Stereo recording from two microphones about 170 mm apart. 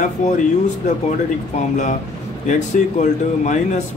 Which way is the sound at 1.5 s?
45° left (ahead or behind).